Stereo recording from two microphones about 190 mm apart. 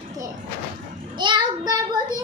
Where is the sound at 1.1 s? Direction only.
25° right (ahead or behind).